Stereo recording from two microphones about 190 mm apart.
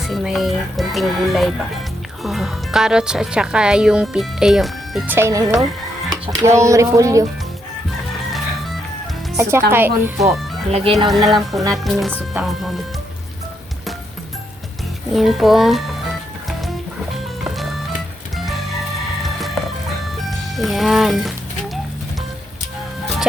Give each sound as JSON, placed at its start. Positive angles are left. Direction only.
{"t": 0.1, "sound": "speech", "side_deg": 0}
{"t": 5.1, "sound": "speech", "side_deg": -15}
{"t": 9.4, "sound": "speech", "side_deg": -10}
{"t": 10.2, "sound": "speech", "side_deg": 0}
{"t": 10.7, "sound": "speech", "side_deg": -30}
{"t": 11.1, "sound": "speech", "side_deg": 0}
{"t": 15.1, "sound": "speech", "side_deg": 0}
{"t": 17.4, "sound": "music", "side_deg": 0}
{"t": 20.6, "sound": "speech", "side_deg": 0}